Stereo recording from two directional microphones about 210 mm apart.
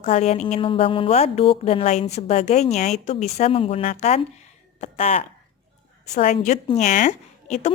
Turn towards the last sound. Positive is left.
turn(degrees=35)  # may be behind; listen again after turning